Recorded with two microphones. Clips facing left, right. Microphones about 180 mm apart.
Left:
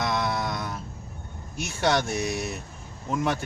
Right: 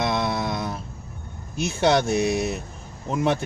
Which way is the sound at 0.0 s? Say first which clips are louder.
Right 3 dB; 25° right (ahead or behind).